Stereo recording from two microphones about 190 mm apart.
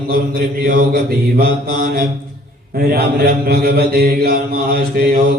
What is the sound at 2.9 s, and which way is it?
Mantra, 50° right (ahead or behind).